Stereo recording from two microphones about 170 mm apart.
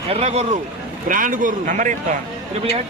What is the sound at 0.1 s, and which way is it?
Speech, 40° right (ahead or behind).